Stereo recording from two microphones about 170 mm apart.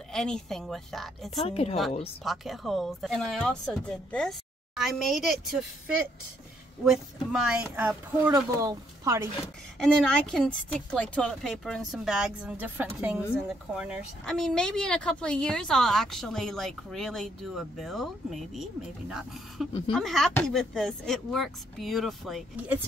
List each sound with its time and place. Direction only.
0.1 s speech: 5° left (ahead or behind)
1.3 s a woman's voice: 35° left (ahead or behind)
2.2 s speech: centre (ahead or behind)
8.3 s speech: 20° right (ahead or behind)
9.8 s speech: 5° left (ahead or behind)